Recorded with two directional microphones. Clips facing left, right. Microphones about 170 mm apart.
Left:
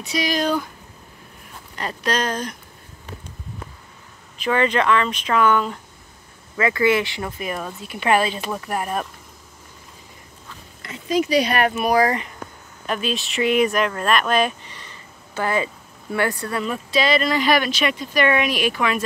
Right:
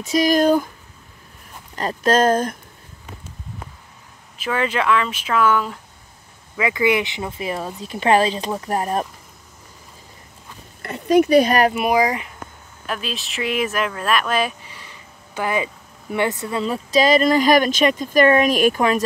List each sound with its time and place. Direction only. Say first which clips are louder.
0.0 s speech: right 6 dB; 45° right (ahead or behind)
1.8 s speech: right 7 dB; 45° right (ahead or behind)
4.4 s speech: left 2 dB; 5° right (ahead or behind)
6.5 s speech: even; 15° right (ahead or behind); by 9.0 s 35° right (ahead or behind)
10.8 s speech: right 6 dB; 60° right (ahead or behind); by 11.7 s 40° right (ahead or behind)
11.7 s speech: even; 15° right (ahead or behind)
12.8 s speech: left 3 dB; centre (ahead or behind); by 16.6 s 20° right (ahead or behind)
16.6 s speech: right 5 dB; 35° right (ahead or behind)